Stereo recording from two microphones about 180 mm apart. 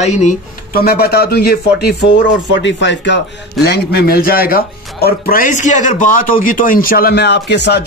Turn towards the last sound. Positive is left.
turn(degrees=70)  # may be behind; listen again after turning